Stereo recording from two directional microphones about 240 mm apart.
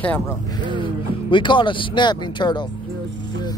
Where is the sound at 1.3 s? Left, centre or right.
Centre.